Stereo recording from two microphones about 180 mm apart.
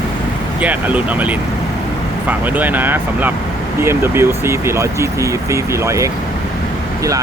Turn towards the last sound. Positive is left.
turn(degrees=-15)  # may be behind; listen again after turning